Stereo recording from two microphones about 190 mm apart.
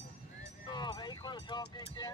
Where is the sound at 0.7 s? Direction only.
20° left (ahead or behind).